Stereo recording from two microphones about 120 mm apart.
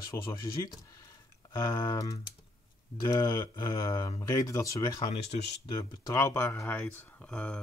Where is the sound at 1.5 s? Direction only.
30° left (ahead or behind); by 7.6 s 10° left (ahead or behind).